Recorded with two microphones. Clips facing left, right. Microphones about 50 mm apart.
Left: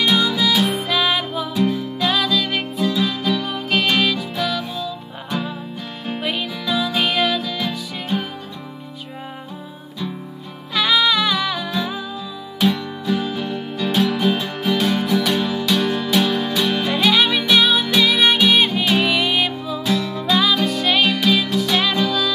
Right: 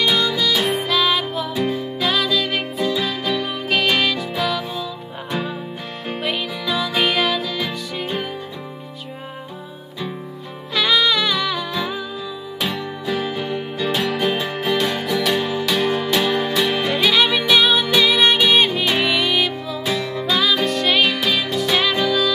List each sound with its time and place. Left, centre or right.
0.0 s music: centre
0.8 s music: centre
6.2 s music: centre
10.7 s music: centre
19.8 s music: centre
20.1 s music: centre